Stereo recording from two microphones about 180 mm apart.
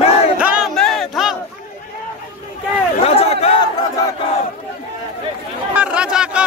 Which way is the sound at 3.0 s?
35° left (ahead or behind).